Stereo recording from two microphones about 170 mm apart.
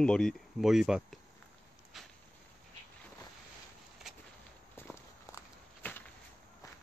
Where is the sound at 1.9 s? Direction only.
Centre (ahead or behind).